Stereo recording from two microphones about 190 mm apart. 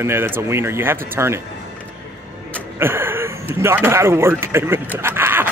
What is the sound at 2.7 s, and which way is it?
A man's voice, 10° right (ahead or behind).